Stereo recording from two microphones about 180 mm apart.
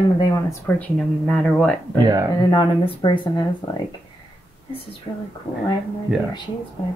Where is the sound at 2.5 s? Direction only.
25° left (ahead or behind).